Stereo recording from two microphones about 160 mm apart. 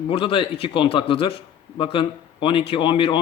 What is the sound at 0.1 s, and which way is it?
Speech, 35° left (ahead or behind).